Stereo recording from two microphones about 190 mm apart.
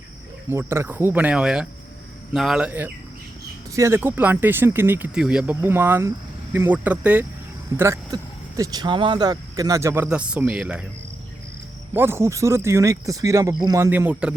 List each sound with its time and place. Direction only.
0.5 s speech: 15° right (ahead or behind)
11.9 s speech: 10° right (ahead or behind)